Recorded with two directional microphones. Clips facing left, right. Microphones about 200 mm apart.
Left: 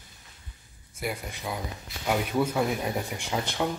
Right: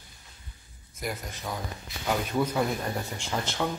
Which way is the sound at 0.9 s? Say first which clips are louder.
Left 2 dB; 10° left (ahead or behind).